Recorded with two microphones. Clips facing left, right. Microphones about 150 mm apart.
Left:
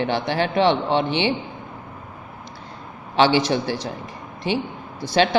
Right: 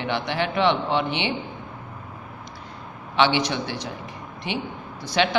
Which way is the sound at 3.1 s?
35° left (ahead or behind).